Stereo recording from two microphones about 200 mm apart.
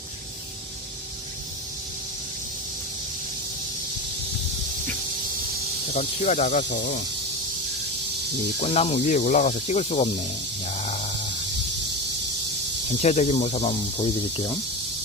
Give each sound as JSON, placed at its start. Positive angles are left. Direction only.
{"t": 5.9, "sound": "speech", "side_deg": 35}
{"t": 6.7, "sound": "speech", "side_deg": 55}
{"t": 8.6, "sound": "speech", "side_deg": 30}
{"t": 10.7, "sound": "a sound", "side_deg": 35}
{"t": 13.0, "sound": "speech", "side_deg": 35}